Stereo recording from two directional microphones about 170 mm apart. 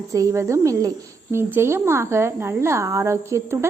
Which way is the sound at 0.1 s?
20° right (ahead or behind).